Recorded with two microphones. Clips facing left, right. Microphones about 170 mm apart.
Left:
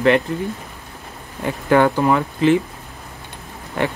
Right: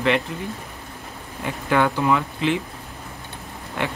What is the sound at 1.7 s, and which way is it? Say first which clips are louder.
Speech: left 5 dB; 45° left (ahead or behind).